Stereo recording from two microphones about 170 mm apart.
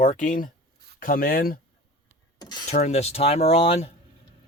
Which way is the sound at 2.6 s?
40° left (ahead or behind).